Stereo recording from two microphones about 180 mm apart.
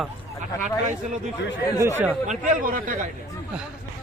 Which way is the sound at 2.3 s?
50° right (ahead or behind).